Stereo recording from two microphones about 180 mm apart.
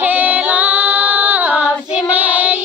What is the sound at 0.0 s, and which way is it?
Female singing, 10° right (ahead or behind).